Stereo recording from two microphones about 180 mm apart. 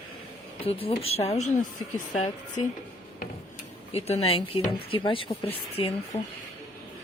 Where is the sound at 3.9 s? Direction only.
35° left (ahead or behind).